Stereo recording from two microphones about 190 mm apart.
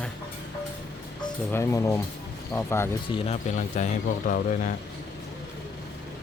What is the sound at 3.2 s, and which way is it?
Speech, 35° left (ahead or behind).